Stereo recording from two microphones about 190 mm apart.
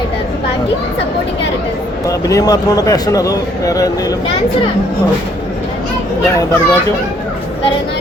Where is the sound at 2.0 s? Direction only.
15° left (ahead or behind).